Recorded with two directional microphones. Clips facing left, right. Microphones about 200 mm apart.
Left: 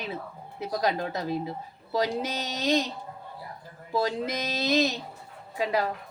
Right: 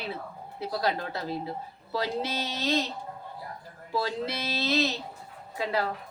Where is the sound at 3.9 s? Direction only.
15° left (ahead or behind).